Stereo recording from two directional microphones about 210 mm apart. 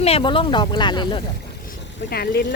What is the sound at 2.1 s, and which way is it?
Speech, 50° left (ahead or behind).